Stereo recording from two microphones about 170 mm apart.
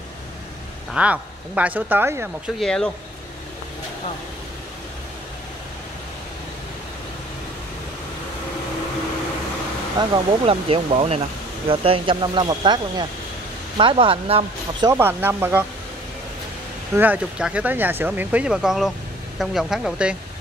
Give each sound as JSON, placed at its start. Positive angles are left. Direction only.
{"t": 0.9, "sound": "speech", "side_deg": -10}
{"t": 2.6, "sound": "speech", "side_deg": 5}
{"t": 9.9, "sound": "speech", "side_deg": -35}
{"t": 14.9, "sound": "speech", "side_deg": -15}
{"t": 16.9, "sound": "speech", "side_deg": -10}